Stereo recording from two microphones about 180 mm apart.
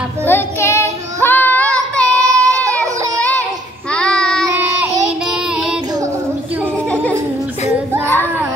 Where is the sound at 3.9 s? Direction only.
5° left (ahead or behind).